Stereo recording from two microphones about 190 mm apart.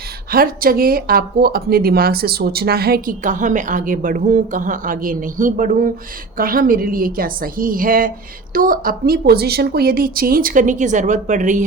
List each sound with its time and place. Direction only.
0.3 s speech: 50° right (ahead or behind)